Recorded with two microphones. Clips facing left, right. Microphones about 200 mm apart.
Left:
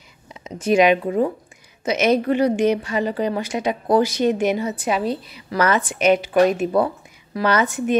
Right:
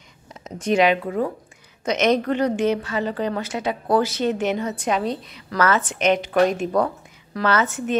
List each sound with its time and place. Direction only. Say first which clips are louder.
0.3 s speech: left 3 dB; centre (ahead or behind); by 1.3 s 20° left (ahead or behind)
1.9 s a woman's voice: left 2 dB; 5° left (ahead or behind)